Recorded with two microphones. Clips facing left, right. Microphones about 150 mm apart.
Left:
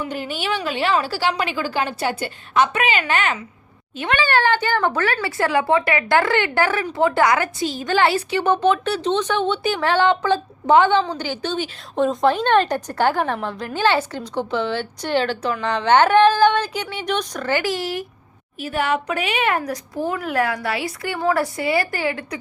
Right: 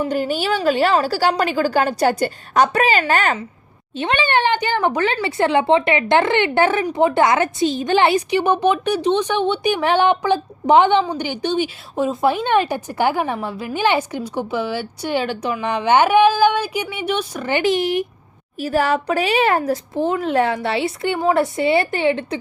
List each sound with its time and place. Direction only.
0.0 s a woman's voice: 40° right (ahead or behind)
3.9 s speech: 25° right (ahead or behind); by 17.5 s 10° right (ahead or behind)
17.5 s a woman's voice: 20° right (ahead or behind)
18.6 s a woman's voice: 40° right (ahead or behind)